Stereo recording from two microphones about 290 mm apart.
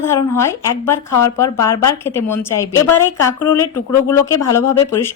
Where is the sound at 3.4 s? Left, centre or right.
Left.